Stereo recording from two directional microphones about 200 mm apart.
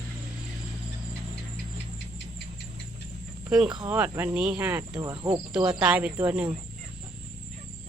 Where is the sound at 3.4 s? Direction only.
5° right (ahead or behind).